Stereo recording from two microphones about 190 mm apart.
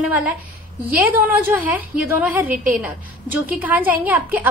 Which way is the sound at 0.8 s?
10° right (ahead or behind).